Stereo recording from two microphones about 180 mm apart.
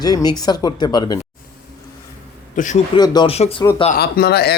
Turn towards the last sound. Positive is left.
turn(degrees=65)  # may be behind; listen again after turning